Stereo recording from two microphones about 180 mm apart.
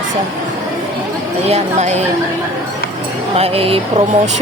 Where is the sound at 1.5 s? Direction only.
35° right (ahead or behind).